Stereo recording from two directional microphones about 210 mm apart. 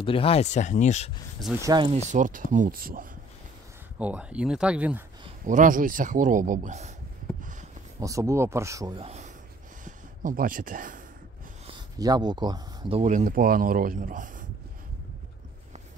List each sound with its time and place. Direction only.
0.0 s speech: 25° left (ahead or behind)
1.6 s speech: 20° right (ahead or behind)
2.0 s a man's voice: 35° right (ahead or behind)
4.0 s speech: 5° right (ahead or behind)
5.4 s a man's voice: 40° right (ahead or behind)
8.0 s speech: 15° right (ahead or behind)
8.9 s speech: 30° right (ahead or behind)
12.0 s speech: 20° right (ahead or behind)
13.0 s a man's voice: 35° right (ahead or behind)